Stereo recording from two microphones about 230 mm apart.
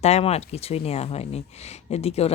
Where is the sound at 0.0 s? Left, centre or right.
Left.